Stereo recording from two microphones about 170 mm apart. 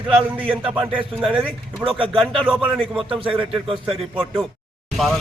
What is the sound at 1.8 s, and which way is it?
Speech, 20° right (ahead or behind).